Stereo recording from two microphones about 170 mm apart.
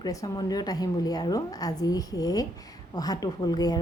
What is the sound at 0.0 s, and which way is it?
A woman's voice, 20° left (ahead or behind).